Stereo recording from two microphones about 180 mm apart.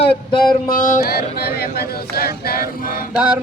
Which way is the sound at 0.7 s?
50° left (ahead or behind).